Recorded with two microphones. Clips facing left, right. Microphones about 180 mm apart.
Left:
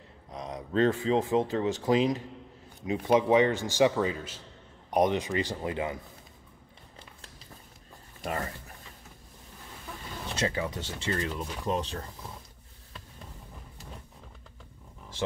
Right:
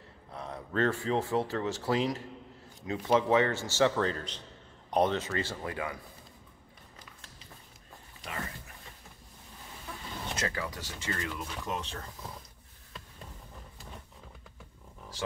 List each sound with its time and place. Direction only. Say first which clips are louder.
0.3 s speech: left 4 dB; 15° left (ahead or behind)
10.3 s speech: left 5 dB; 25° left (ahead or behind)